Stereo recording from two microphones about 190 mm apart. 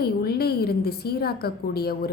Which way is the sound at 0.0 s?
55° left (ahead or behind).